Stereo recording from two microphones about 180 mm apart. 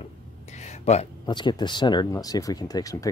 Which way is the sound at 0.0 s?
40° left (ahead or behind).